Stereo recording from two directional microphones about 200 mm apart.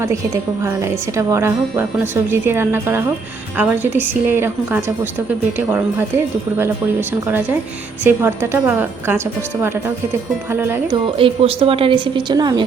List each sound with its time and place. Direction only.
1.1 s a woman's voice: 15° right (ahead or behind)
8.0 s a woman's voice: 10° right (ahead or behind)
10.9 s speech: 25° right (ahead or behind)